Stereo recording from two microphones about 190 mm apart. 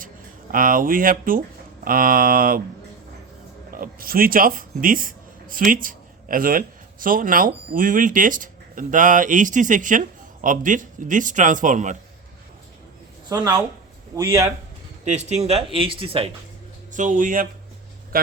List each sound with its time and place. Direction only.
0.5 s speech: 45° right (ahead or behind)
3.7 s speech: 50° right (ahead or behind)
13.2 s a man's voice: 20° right (ahead or behind)
15.4 s speech: 30° right (ahead or behind)
16.9 s a man's voice: 45° right (ahead or behind)